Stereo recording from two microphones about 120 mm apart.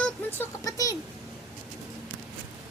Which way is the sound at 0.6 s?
30° left (ahead or behind).